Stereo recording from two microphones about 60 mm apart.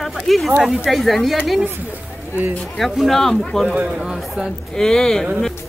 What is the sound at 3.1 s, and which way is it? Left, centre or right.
Speech, centre.